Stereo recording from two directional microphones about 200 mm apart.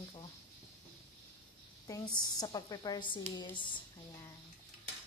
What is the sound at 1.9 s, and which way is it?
A woman's voice, 20° left (ahead or behind).